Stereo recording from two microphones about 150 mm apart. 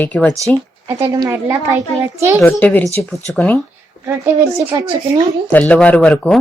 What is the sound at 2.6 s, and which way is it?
Speech, 10° left (ahead or behind).